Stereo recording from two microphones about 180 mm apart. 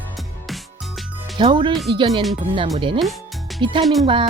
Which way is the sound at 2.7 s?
30° right (ahead or behind).